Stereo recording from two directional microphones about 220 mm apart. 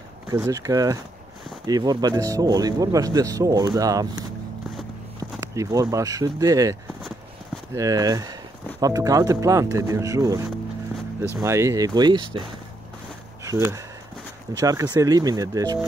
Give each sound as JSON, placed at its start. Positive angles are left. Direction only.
{"t": 0.3, "sound": "speech", "side_deg": -15}
{"t": 5.4, "sound": "speech", "side_deg": -15}